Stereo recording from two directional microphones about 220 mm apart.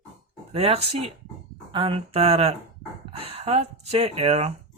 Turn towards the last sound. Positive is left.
turn(degrees=-30)  # may be behind; listen again after turning